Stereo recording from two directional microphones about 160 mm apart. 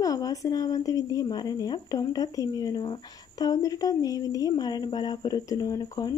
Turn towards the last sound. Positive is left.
turn(degrees=25)  # may be behind; listen again after turning